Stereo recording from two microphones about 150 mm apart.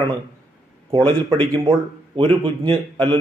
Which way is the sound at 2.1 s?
40° right (ahead or behind).